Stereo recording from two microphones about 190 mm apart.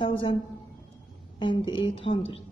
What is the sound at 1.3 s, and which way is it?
A woman's voice, 25° left (ahead or behind).